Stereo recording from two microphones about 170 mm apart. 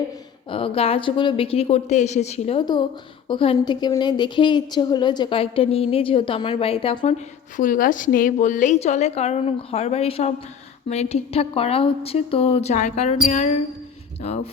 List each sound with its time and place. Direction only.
0.5 s speech: 30° left (ahead or behind)
2.6 s a woman's voice: 25° left (ahead or behind)
7.0 s a woman's voice: 50° left (ahead or behind)